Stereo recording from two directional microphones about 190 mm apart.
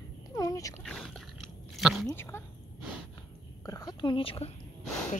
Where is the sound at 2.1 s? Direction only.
10° left (ahead or behind).